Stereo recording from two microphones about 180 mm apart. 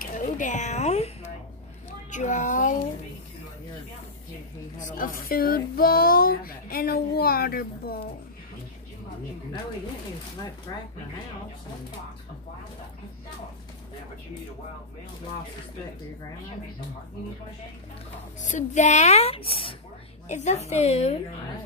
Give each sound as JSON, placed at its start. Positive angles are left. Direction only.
{"t": 0.0, "sound": "speech", "side_deg": 45}
{"t": 4.7, "sound": "speech", "side_deg": 45}
{"t": 10.7, "sound": "speech", "side_deg": 20}
{"t": 18.4, "sound": "speech", "side_deg": 40}